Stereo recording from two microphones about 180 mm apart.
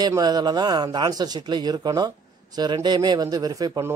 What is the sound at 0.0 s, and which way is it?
A man's voice, 20° right (ahead or behind).